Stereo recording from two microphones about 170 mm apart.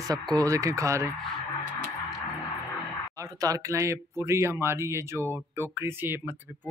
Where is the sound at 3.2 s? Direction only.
20° right (ahead or behind).